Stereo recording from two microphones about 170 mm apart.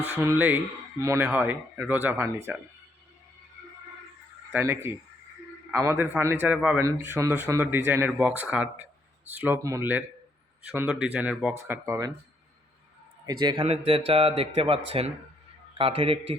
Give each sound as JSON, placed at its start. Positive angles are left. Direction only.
{"t": 0.0, "sound": "speech", "side_deg": -15}
{"t": 4.5, "sound": "speech", "side_deg": -15}
{"t": 11.7, "sound": "speech", "side_deg": -20}
{"t": 13.2, "sound": "a man's voice", "side_deg": -25}
{"t": 15.8, "sound": "speech", "side_deg": -35}